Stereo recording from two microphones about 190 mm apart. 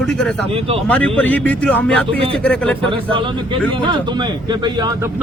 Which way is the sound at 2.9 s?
25° right (ahead or behind).